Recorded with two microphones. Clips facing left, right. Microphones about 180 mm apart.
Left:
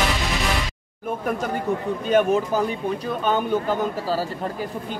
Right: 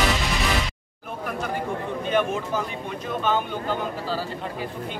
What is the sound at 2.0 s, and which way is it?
Speech, 40° left (ahead or behind).